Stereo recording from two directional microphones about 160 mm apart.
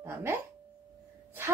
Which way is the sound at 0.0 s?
15° right (ahead or behind).